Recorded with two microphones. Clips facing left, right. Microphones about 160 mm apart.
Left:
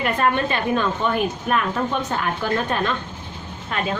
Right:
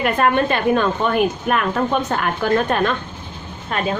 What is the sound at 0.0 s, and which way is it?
A woman's voice, 55° right (ahead or behind).